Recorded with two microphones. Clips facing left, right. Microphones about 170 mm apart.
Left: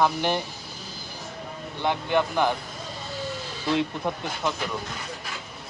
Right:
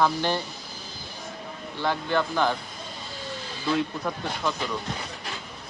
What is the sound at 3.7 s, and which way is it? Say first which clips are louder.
Speech: left 1 dB; 20° left (ahead or behind).